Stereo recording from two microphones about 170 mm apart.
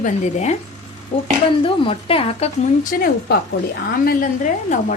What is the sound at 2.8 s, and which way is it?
A woman's voice, 50° left (ahead or behind).